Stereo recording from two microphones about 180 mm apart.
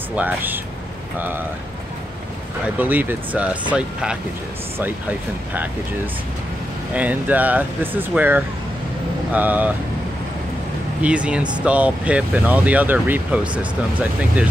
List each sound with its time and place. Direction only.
0.1 s speech: 10° right (ahead or behind)
2.6 s speech: 10° right (ahead or behind)
6.9 s speech: 10° right (ahead or behind)
11.0 s speech: 5° right (ahead or behind)